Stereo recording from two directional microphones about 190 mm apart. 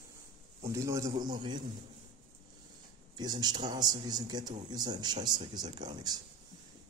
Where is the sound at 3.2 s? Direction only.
20° right (ahead or behind).